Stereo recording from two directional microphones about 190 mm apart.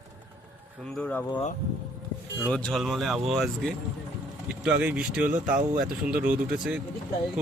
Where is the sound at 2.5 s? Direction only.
5° left (ahead or behind).